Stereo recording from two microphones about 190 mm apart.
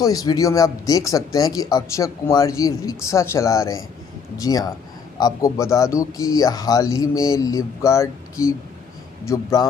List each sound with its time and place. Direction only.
0.0 s speech: 20° left (ahead or behind)